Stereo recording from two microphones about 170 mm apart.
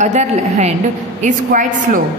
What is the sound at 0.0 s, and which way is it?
A man's voice, 45° right (ahead or behind).